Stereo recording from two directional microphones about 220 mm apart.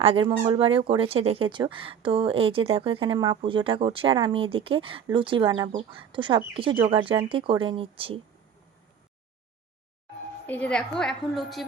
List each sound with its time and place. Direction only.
0.0 s speech: 25° right (ahead or behind)
10.4 s a woman's voice: 5° left (ahead or behind)